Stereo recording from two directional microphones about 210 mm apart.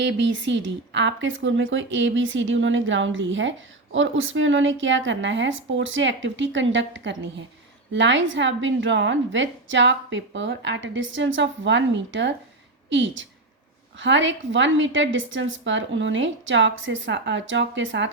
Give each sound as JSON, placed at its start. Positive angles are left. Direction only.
{"t": 0.0, "sound": "a woman's voice", "side_deg": -60}